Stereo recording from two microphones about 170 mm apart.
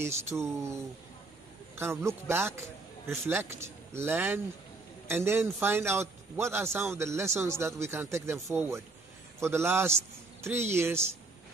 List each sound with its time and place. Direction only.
0.0 s a man's voice: 15° right (ahead or behind)
1.8 s a man's voice: 15° right (ahead or behind)